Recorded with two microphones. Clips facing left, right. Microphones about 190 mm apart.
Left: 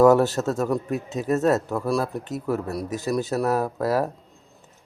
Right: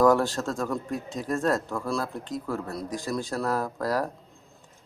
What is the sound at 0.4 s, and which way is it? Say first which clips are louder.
Speech: left 5 dB; 20° left (ahead or behind).